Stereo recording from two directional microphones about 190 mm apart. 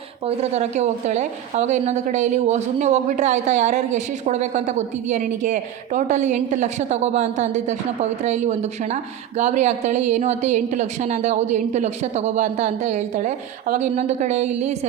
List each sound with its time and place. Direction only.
0.3 s a woman's voice: 35° right (ahead or behind)